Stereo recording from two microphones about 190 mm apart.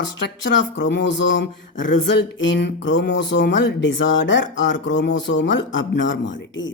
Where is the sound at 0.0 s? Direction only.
65° left (ahead or behind).